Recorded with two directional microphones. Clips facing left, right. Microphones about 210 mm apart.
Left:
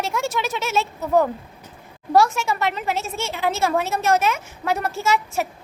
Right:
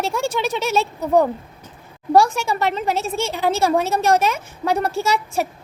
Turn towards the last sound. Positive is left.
turn(degrees=-35)  # may be behind; listen again after turning